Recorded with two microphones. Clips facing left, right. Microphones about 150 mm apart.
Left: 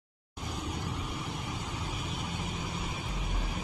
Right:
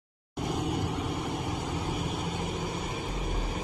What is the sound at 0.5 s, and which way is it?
Vehicle, 65° right (ahead or behind).